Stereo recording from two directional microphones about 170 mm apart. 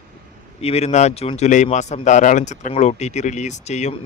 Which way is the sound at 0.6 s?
40° left (ahead or behind).